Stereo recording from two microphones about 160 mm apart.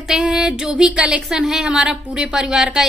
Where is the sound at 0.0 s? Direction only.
5° right (ahead or behind).